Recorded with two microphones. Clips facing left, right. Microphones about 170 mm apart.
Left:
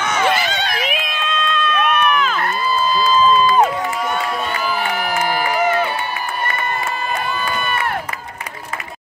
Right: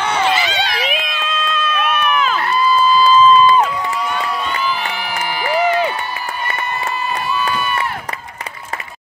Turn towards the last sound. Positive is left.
turn(degrees=55)  # may be behind; listen again after turning